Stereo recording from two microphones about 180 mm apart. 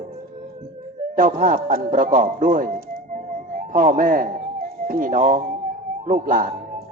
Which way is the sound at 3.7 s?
50° right (ahead or behind).